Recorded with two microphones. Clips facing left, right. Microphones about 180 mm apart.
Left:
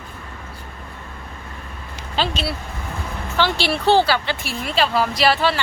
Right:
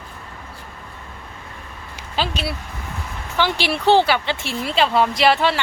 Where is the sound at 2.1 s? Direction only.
10° right (ahead or behind).